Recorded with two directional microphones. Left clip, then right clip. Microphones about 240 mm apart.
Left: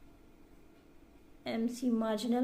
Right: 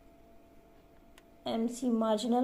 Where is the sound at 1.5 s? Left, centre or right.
Centre.